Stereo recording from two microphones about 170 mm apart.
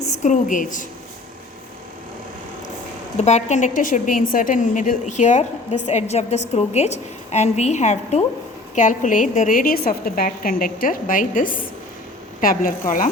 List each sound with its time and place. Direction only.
0.0 s a woman's voice: 45° left (ahead or behind)
3.2 s a woman's voice: 40° left (ahead or behind)